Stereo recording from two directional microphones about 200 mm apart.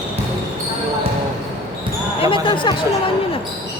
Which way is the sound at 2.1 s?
25° left (ahead or behind).